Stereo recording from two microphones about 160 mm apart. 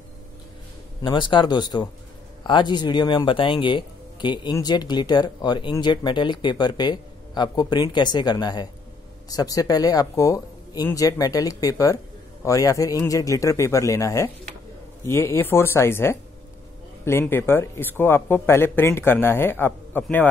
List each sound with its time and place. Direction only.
1.0 s speech: 30° left (ahead or behind); by 20.2 s 10° left (ahead or behind)